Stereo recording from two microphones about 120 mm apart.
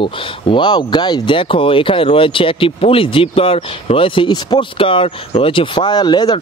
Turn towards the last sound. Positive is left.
turn(degrees=35)  # may be behind; listen again after turning